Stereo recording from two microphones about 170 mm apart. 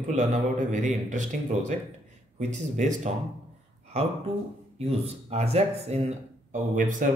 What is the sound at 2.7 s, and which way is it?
Speech, 45° right (ahead or behind).